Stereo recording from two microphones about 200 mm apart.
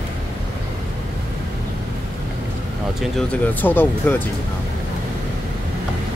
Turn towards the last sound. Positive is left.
turn(degrees=10)  # may be behind; listen again after turning